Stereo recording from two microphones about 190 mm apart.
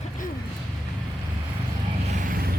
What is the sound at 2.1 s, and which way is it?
Vehicle, 45° right (ahead or behind).